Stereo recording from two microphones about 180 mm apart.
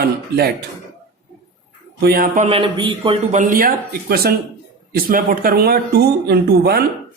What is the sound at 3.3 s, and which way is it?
Speech, 45° right (ahead or behind).